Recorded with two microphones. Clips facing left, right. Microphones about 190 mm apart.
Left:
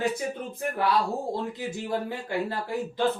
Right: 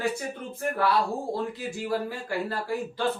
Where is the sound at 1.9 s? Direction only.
20° left (ahead or behind).